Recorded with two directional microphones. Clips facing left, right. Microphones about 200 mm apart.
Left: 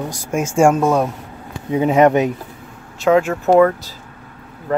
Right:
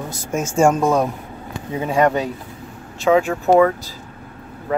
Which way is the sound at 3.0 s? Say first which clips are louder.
Left 2 dB; 5° left (ahead or behind).